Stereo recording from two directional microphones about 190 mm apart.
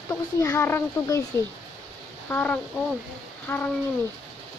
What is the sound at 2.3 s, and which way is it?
Speech, 10° left (ahead or behind).